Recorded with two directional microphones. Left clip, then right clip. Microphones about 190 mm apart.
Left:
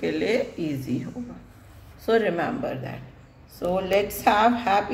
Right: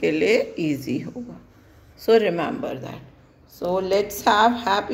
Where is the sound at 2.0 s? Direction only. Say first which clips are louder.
Right 4 dB; 40° right (ahead or behind).